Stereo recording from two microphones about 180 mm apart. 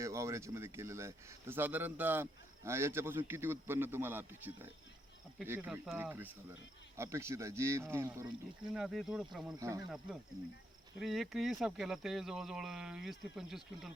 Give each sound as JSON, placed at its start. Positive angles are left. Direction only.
{"t": 0.0, "sound": "speech", "side_deg": -15}
{"t": 8.7, "sound": "speech", "side_deg": 0}
{"t": 9.6, "sound": "speech", "side_deg": -20}
{"t": 11.0, "sound": "speech", "side_deg": 0}